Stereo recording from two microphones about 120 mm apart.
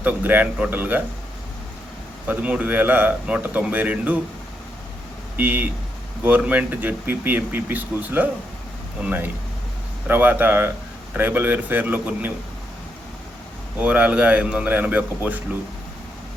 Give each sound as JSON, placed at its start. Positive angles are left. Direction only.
{"t": 0.0, "sound": "speech", "side_deg": -15}
{"t": 2.2, "sound": "speech", "side_deg": -15}
{"t": 5.4, "sound": "speech", "side_deg": -15}
{"t": 13.7, "sound": "speech", "side_deg": -10}